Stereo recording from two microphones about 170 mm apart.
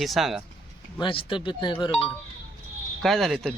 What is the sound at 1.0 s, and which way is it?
Speech, 30° left (ahead or behind).